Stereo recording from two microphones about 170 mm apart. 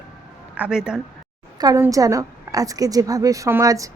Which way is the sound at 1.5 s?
20° right (ahead or behind).